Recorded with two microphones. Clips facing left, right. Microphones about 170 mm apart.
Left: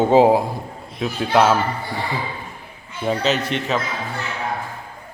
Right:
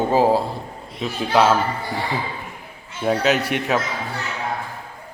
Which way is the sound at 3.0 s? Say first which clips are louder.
Right 1 dB; 5° right (ahead or behind).